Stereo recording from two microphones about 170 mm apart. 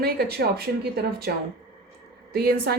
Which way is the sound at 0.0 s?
70° right (ahead or behind).